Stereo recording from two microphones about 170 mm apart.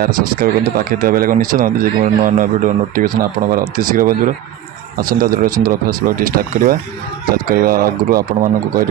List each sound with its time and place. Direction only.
0.0 s speech: 60° right (ahead or behind)